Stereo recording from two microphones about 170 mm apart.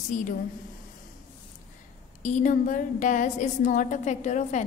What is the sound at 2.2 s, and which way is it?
A woman's voice, 45° left (ahead or behind).